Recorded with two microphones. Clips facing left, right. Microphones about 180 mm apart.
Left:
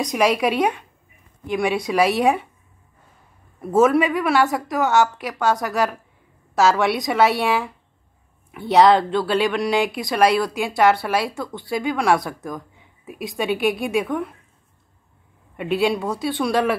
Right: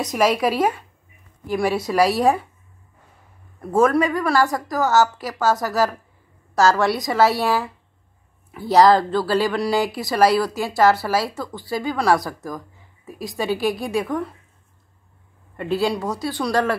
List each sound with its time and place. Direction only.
0.0 s speech: centre (ahead or behind)
3.6 s speech: 5° left (ahead or behind)
15.5 s speech: 5° left (ahead or behind)